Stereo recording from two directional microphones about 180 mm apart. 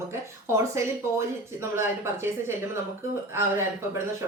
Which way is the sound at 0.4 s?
15° right (ahead or behind).